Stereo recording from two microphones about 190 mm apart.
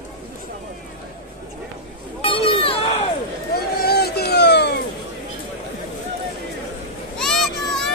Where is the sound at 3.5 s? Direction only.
55° left (ahead or behind).